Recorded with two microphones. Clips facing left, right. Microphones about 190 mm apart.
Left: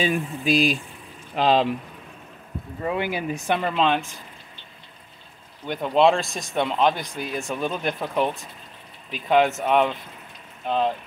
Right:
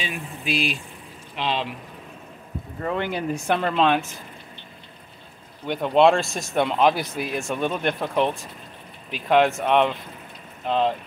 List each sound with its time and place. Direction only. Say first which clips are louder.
0.0 s speech: left 8 dB; 40° left (ahead or behind)
2.8 s speech: even; 10° left (ahead or behind)
5.7 s speech: right 1 dB; centre (ahead or behind)